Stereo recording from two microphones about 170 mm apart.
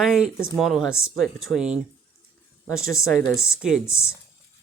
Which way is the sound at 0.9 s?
15° left (ahead or behind).